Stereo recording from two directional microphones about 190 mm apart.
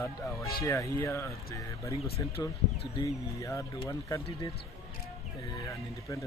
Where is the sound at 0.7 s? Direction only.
15° left (ahead or behind).